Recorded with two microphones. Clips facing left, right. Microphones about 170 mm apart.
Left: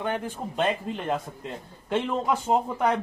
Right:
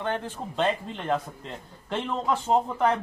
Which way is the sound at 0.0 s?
10° left (ahead or behind).